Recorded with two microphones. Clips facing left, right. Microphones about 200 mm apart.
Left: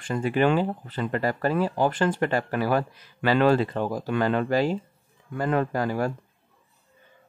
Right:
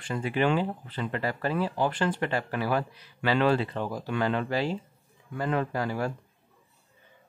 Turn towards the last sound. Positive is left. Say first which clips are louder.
# left 4 dB
turn(degrees=45)  # may be behind; listen again after turning